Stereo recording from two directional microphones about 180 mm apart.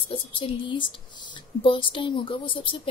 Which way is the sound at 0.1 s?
30° left (ahead or behind).